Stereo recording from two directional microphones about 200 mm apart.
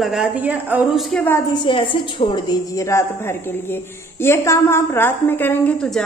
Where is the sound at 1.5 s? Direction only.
25° left (ahead or behind).